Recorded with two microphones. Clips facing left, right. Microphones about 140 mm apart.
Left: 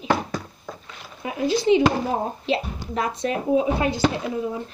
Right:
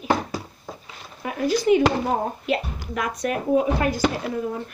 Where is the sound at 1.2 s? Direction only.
20° left (ahead or behind).